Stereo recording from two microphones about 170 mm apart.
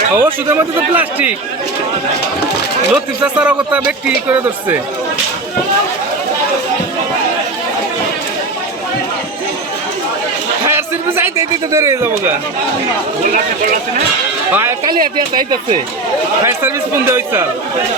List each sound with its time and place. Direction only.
0.2 s speech: 10° right (ahead or behind)
2.9 s speech: 5° right (ahead or behind)
10.7 s a sound: 15° right (ahead or behind)
14.5 s speech: 15° right (ahead or behind)
16.4 s speech: 15° right (ahead or behind)